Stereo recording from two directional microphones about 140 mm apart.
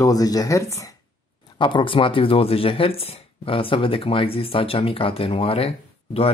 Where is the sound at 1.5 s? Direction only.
35° left (ahead or behind).